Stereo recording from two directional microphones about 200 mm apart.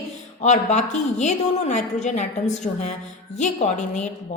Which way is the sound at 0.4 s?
35° left (ahead or behind).